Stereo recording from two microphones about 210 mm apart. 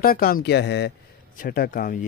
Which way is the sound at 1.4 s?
45° left (ahead or behind).